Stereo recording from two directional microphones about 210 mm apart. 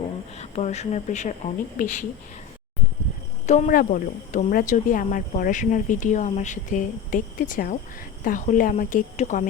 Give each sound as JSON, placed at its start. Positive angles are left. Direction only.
{"t": 0.3, "sound": "speech", "side_deg": 30}
{"t": 3.4, "sound": "speech", "side_deg": 35}